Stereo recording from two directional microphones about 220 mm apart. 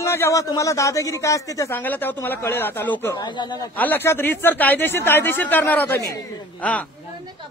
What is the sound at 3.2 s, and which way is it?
Speech, 20° left (ahead or behind).